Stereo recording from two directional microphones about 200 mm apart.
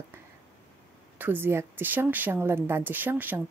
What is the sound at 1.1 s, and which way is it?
Speech, 10° right (ahead or behind).